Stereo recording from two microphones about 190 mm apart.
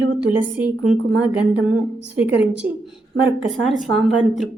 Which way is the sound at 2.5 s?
5° right (ahead or behind).